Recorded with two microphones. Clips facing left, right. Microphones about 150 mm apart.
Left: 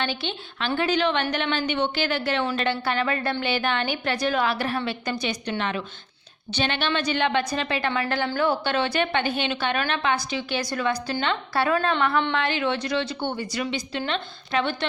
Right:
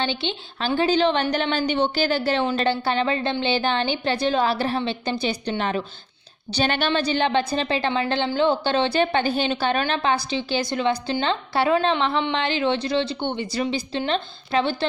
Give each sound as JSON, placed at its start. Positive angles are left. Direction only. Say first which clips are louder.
{"t": 0.0, "sound": "a woman's voice", "louder": "right 3 dB", "side_deg": -30}